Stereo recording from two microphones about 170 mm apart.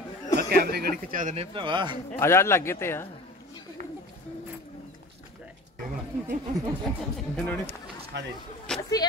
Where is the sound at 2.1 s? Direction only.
15° left (ahead or behind).